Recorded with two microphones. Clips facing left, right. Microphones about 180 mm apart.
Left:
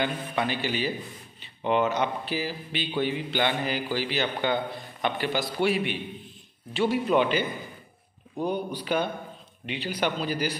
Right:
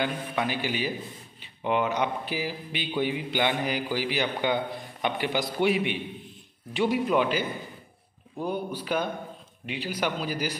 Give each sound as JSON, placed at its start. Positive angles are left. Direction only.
{"t": 0.0, "sound": "speech", "side_deg": -10}
{"t": 7.2, "sound": "a man's voice", "side_deg": -5}
{"t": 8.5, "sound": "speech", "side_deg": -5}